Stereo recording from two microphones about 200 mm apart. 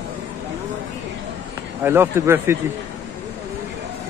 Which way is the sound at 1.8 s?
10° right (ahead or behind).